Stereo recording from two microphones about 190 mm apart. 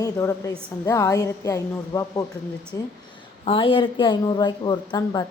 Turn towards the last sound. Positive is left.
turn(degrees=20)  # may be behind; listen again after turning